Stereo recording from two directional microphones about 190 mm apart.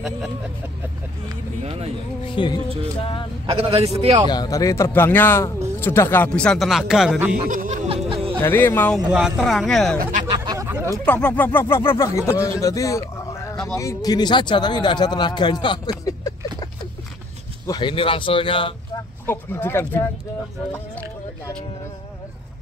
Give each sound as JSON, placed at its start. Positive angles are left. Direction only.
{"t": 1.6, "sound": "a man's voice", "side_deg": -30}
{"t": 2.3, "sound": "speech", "side_deg": 25}
{"t": 3.4, "sound": "a man's voice", "side_deg": -30}
{"t": 4.3, "sound": "speech", "side_deg": 20}
{"t": 7.4, "sound": "snicker", "side_deg": -45}
{"t": 8.4, "sound": "speech", "side_deg": 10}
{"t": 8.9, "sound": "speech", "side_deg": -5}
{"t": 10.3, "sound": "a sound", "side_deg": -20}
{"t": 11.1, "sound": "speech", "side_deg": 10}
{"t": 17.6, "sound": "speech", "side_deg": 25}
{"t": 19.2, "sound": "speech", "side_deg": 10}